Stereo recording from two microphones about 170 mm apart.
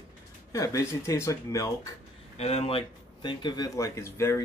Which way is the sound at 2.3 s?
40° left (ahead or behind).